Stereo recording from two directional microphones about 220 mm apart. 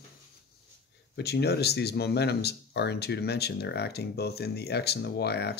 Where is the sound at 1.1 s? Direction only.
50° left (ahead or behind).